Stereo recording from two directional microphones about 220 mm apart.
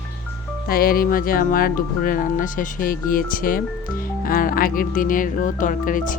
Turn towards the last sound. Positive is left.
turn(degrees=35)  # may be behind; listen again after turning